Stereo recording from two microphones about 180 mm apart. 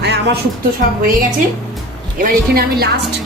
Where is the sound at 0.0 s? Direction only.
70° right (ahead or behind).